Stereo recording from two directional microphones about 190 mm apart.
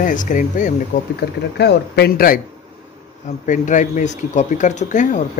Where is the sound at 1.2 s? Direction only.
60° left (ahead or behind).